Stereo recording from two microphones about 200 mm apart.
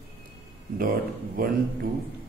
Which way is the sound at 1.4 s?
45° right (ahead or behind).